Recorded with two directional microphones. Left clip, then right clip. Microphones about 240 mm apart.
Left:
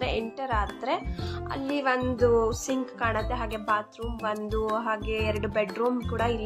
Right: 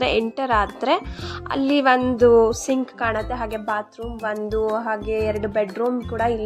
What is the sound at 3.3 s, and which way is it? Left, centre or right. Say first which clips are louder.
Speech: right 3 dB; centre.